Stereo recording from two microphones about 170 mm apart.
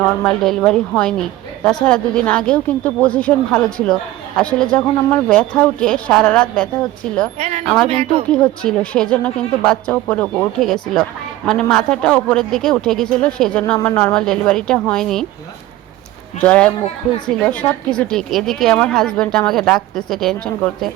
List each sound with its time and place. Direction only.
0.3 s a woman's voice: centre (ahead or behind)
7.3 s speech: 45° right (ahead or behind)
7.6 s a woman's voice: 5° left (ahead or behind)
7.9 s speech: 35° right (ahead or behind)
8.3 s a woman's voice: 5° left (ahead or behind)
16.4 s a woman's voice: 5° left (ahead or behind)